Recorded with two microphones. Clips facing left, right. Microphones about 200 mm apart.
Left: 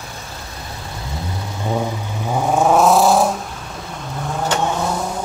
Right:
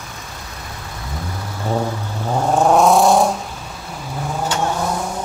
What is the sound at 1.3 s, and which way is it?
Vehicle, 15° left (ahead or behind).